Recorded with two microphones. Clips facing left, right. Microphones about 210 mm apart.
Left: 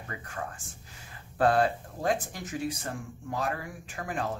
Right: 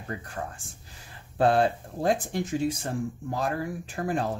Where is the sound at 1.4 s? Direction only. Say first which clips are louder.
Right 2 dB; 25° right (ahead or behind).